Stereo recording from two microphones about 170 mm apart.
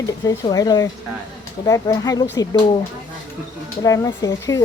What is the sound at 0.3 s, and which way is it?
Speech, 20° left (ahead or behind).